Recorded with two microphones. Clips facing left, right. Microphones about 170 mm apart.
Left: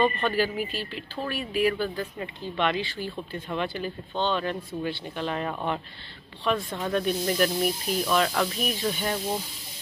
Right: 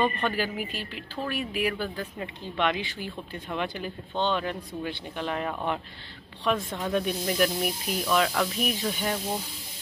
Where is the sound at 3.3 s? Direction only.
Centre (ahead or behind).